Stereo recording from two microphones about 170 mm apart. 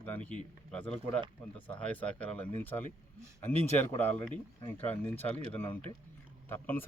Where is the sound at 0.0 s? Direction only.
10° left (ahead or behind).